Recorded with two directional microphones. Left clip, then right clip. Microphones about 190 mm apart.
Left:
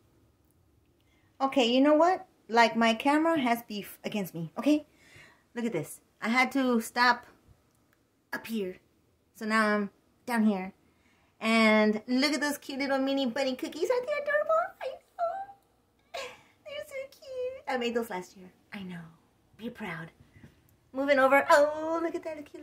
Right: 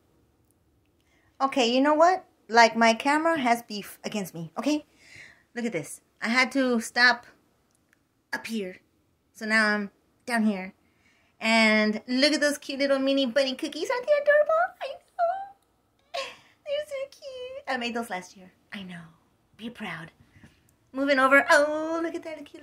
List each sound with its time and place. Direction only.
1.4 s a woman's voice: 5° left (ahead or behind)
16.1 s a sound: 5° left (ahead or behind)
19.5 s a woman's voice: 10° left (ahead or behind)